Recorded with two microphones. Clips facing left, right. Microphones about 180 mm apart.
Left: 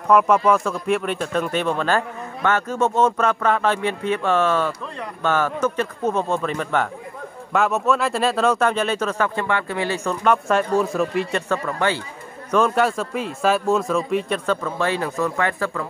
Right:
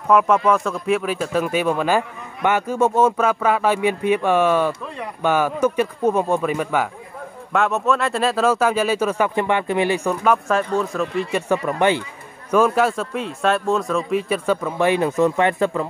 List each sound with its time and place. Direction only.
0.1 s speech: centre (ahead or behind)
11.3 s speech: 15° right (ahead or behind)
12.4 s speech: 5° right (ahead or behind)